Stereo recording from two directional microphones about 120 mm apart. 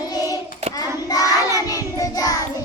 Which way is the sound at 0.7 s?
30° left (ahead or behind).